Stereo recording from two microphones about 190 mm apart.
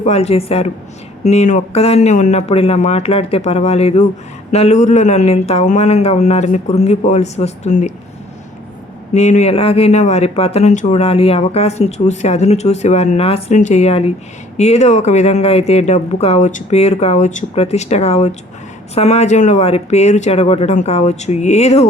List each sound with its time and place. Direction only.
0.0 s speech: 35° left (ahead or behind)
9.1 s speech: 40° left (ahead or behind)